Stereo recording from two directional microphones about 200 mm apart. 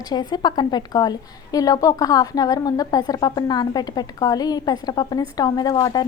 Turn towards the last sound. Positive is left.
turn(degrees=20)  # may be behind; listen again after turning